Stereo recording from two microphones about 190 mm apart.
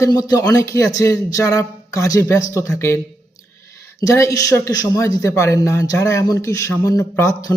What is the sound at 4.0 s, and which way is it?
A man's voice, 15° left (ahead or behind).